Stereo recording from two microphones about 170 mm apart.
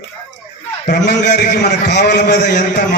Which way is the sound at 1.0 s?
80° left.